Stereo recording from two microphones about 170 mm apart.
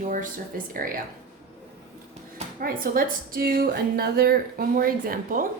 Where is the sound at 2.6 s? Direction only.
55° right (ahead or behind).